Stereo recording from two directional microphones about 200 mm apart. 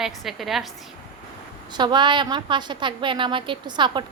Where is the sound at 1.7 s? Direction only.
20° right (ahead or behind).